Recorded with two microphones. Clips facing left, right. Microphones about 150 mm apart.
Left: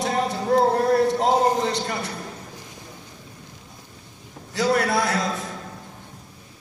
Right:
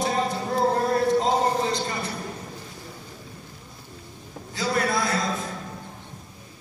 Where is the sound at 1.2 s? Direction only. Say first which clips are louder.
Left 3 dB; 75° left (ahead or behind).